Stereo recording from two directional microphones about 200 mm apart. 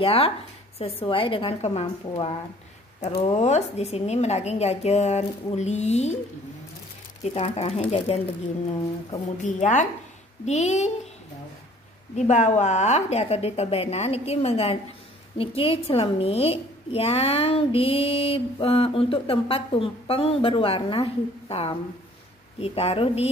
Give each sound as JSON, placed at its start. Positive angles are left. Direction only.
{"t": 0.0, "sound": "a woman's voice", "side_deg": 30}
{"t": 7.3, "sound": "a woman's voice", "side_deg": 30}
{"t": 9.4, "sound": "a woman's voice", "side_deg": 35}
{"t": 12.2, "sound": "a woman's voice", "side_deg": 35}